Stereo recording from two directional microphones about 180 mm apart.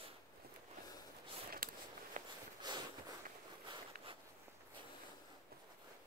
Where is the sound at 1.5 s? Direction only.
50° right (ahead or behind).